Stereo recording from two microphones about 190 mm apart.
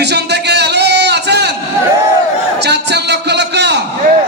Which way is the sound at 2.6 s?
60° right (ahead or behind).